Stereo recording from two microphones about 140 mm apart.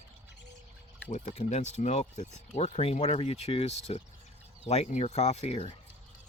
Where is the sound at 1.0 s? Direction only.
55° left (ahead or behind).